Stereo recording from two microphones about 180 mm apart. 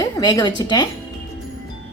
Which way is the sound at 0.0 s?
20° left (ahead or behind).